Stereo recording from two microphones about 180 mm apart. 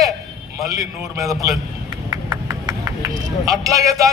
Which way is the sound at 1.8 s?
25° right (ahead or behind).